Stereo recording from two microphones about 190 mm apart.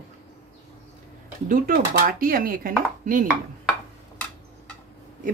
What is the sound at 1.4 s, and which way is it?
Chopping, 45° right (ahead or behind).